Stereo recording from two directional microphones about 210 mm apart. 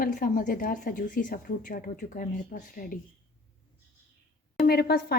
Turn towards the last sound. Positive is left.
turn(degrees=50)  # may be behind; listen again after turning